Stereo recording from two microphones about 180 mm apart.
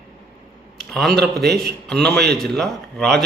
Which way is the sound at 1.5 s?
5° left (ahead or behind).